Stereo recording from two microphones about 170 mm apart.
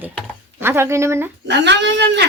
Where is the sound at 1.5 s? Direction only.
90° right.